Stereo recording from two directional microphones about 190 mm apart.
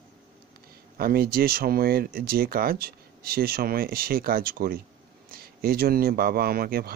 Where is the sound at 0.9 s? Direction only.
50° right (ahead or behind).